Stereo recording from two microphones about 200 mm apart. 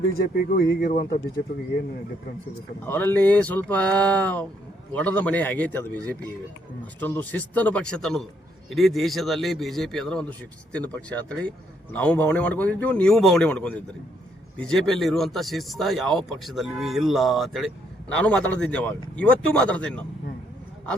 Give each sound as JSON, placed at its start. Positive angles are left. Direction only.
{"t": 0.2, "sound": "speech", "side_deg": 50}
{"t": 2.8, "sound": "speech", "side_deg": 10}
{"t": 7.0, "sound": "speech", "side_deg": 10}